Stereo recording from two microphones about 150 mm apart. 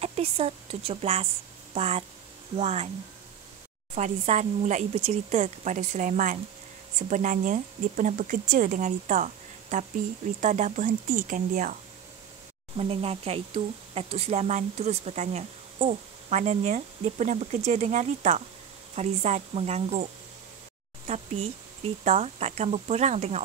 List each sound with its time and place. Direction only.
0.0 s speech: 45° right (ahead or behind)
3.9 s speech: 50° right (ahead or behind)
12.7 s speech: 40° right (ahead or behind)
21.1 s speech: 45° right (ahead or behind)